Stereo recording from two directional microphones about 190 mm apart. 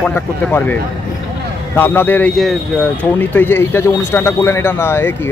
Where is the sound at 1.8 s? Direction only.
10° left (ahead or behind).